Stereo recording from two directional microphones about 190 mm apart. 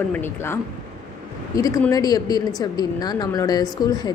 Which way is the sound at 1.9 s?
20° left (ahead or behind).